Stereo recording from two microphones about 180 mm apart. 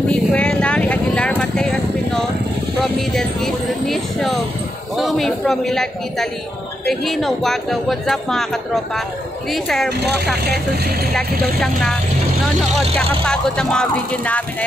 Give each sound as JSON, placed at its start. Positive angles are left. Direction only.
{"t": 0.1, "sound": "vehicle", "side_deg": 5}
{"t": 2.8, "sound": "a sound", "side_deg": 0}
{"t": 4.9, "sound": "speech", "side_deg": 0}
{"t": 9.5, "sound": "speech", "side_deg": 0}
{"t": 9.8, "sound": "speech", "side_deg": -65}
{"t": 11.6, "sound": "speech", "side_deg": 0}